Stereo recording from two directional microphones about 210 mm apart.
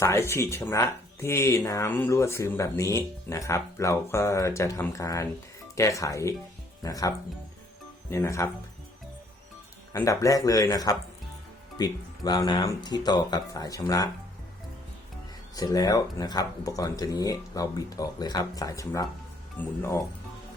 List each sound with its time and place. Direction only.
0.0 s speech: 15° left (ahead or behind)
8.1 s speech: 15° left (ahead or behind)
9.9 s speech: 15° left (ahead or behind)
15.5 s speech: 20° left (ahead or behind)